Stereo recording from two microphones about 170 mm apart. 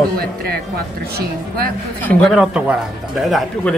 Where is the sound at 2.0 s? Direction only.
10° left (ahead or behind).